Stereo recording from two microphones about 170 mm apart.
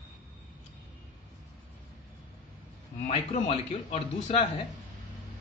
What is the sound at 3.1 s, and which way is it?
A man's voice, 35° left (ahead or behind).